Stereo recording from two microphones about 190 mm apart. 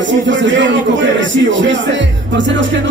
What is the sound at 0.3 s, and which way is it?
Music, 75° right (ahead or behind).